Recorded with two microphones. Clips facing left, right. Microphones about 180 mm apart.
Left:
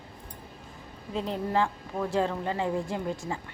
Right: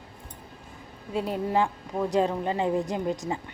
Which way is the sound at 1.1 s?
10° right (ahead or behind).